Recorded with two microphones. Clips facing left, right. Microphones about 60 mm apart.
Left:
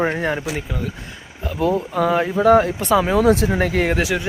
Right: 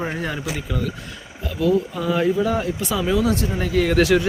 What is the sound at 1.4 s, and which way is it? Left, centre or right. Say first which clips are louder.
Speech: even; left.